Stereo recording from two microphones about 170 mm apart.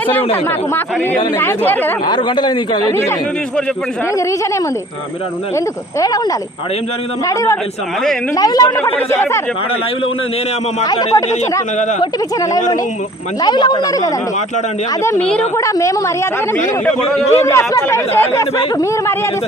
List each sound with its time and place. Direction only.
1.4 s speech: 10° left (ahead or behind)
2.0 s a man's voice: 25° left (ahead or behind)
7.3 s a man's voice: 15° left (ahead or behind)
8.7 s speech: 10° left (ahead or behind)
10.8 s a man's voice: 25° left (ahead or behind)
13.4 s a man's voice: 25° left (ahead or behind)
15.2 s speech: 5° left (ahead or behind)
15.5 s speech: 20° left (ahead or behind)
17.3 s speech: 15° left (ahead or behind)